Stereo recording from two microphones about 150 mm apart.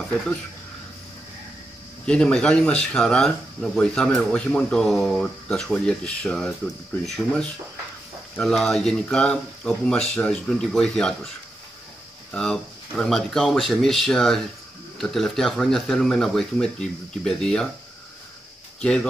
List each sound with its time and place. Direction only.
2.0 s speech: 5° left (ahead or behind)
12.3 s speech: 5° left (ahead or behind)
18.8 s speech: 5° left (ahead or behind)